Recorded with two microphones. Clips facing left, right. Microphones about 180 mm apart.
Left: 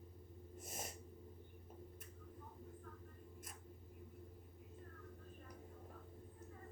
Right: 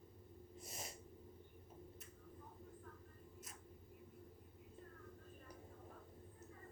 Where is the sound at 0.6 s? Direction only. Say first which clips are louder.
Left 3 dB; 50° left (ahead or behind).